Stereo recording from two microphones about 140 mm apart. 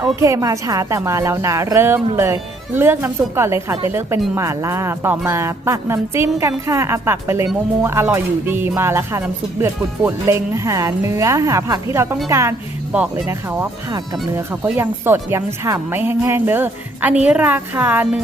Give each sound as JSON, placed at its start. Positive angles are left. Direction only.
{"t": 0.0, "sound": "a woman's voice", "side_deg": -20}